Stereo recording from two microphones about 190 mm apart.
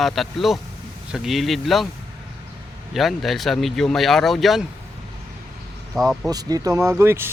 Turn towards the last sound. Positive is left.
turn(degrees=-15)  # may be behind; listen again after turning